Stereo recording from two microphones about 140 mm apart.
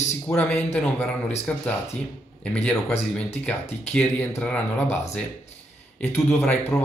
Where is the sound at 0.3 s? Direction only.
10° left (ahead or behind).